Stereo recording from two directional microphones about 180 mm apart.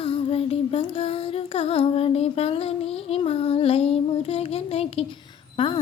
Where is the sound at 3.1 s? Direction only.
35° left (ahead or behind).